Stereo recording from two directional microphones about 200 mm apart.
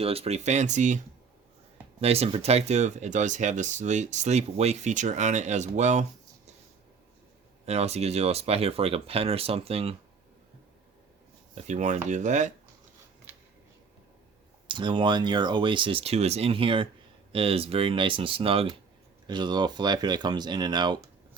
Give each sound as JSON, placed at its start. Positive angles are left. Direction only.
{"t": 0.0, "sound": "speech", "side_deg": -30}
{"t": 2.0, "sound": "speech", "side_deg": -30}
{"t": 7.6, "sound": "speech", "side_deg": -30}
{"t": 11.5, "sound": "speech", "side_deg": -35}
{"t": 14.7, "sound": "speech", "side_deg": -25}